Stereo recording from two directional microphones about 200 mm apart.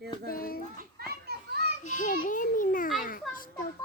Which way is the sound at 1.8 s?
40° left (ahead or behind).